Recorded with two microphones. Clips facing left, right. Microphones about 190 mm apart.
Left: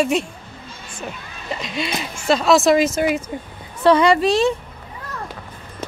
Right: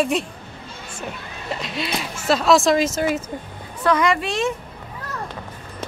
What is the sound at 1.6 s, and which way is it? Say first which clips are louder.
Speech: left 2 dB; centre (ahead or behind).